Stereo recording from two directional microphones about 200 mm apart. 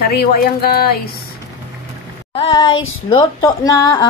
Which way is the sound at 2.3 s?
25° left (ahead or behind).